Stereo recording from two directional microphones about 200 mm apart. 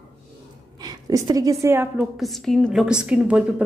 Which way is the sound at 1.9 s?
Centre (ahead or behind).